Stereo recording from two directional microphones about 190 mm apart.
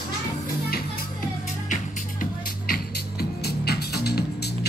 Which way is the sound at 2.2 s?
55° left (ahead or behind).